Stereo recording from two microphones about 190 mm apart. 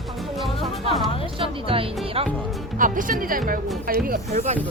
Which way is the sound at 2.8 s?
45° right (ahead or behind).